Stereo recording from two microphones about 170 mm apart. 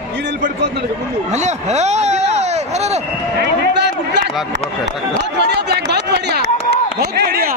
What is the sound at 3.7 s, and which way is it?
Run, 90° right.